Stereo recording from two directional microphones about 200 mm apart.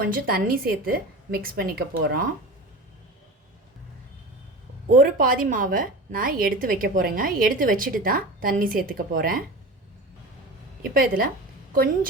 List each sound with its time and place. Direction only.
0.0 s a woman's voice: 45° right (ahead or behind)
4.9 s a woman's voice: 45° right (ahead or behind)
10.8 s a woman's voice: 45° right (ahead or behind)